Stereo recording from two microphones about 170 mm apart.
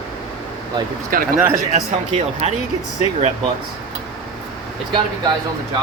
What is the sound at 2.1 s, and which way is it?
Speech, 40° right (ahead or behind).